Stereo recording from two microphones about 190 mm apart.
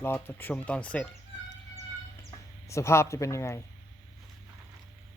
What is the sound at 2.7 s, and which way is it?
Speech, 15° left (ahead or behind).